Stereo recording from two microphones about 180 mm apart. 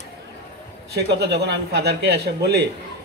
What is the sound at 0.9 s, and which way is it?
A man's voice, 65° right (ahead or behind).